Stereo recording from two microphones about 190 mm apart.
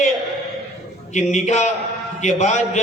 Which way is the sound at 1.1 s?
40° left (ahead or behind).